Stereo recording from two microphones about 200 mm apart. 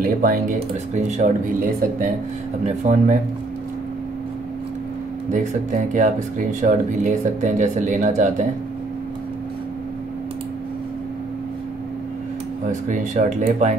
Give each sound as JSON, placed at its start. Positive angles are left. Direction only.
{"t": 0.0, "sound": "speech", "side_deg": -45}
{"t": 0.6, "sound": "speech", "side_deg": -35}
{"t": 5.3, "sound": "speech", "side_deg": -40}
{"t": 12.6, "sound": "speech", "side_deg": -40}